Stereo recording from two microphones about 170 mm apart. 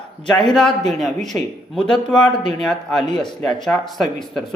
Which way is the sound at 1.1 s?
45° right (ahead or behind).